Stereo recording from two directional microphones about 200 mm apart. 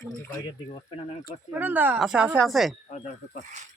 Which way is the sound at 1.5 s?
10° right (ahead or behind).